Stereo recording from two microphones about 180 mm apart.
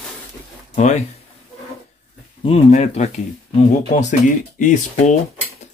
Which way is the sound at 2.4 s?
35° left (ahead or behind).